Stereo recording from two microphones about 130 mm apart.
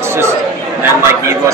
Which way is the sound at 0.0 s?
20° right (ahead or behind).